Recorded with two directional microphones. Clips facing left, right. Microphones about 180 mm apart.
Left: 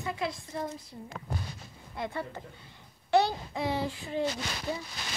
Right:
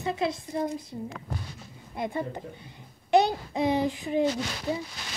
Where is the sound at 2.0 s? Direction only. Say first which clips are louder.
Right 5 dB; 15° right (ahead or behind).